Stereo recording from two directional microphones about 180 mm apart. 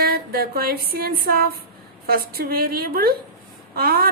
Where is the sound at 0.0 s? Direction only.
60° right (ahead or behind).